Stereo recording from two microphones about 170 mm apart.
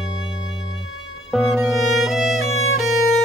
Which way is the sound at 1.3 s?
Centre (ahead or behind).